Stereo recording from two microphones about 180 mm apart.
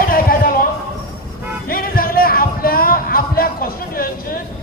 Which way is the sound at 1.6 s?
55° left (ahead or behind).